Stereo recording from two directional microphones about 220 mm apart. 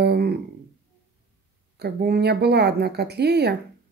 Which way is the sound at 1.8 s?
45° right (ahead or behind).